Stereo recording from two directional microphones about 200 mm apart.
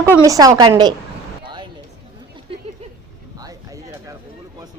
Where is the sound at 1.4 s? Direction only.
25° right (ahead or behind).